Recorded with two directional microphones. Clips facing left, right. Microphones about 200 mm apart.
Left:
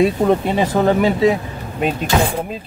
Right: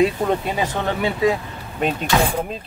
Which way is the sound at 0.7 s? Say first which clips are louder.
Left 11 dB; 40° left (ahead or behind).